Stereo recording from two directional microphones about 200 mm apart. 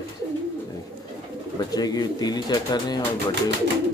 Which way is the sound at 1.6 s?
20° left (ahead or behind).